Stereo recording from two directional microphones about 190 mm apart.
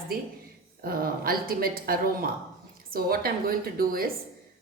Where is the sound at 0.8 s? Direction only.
50° right (ahead or behind).